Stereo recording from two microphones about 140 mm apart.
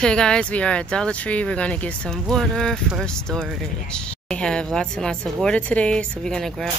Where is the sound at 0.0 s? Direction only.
5° left (ahead or behind).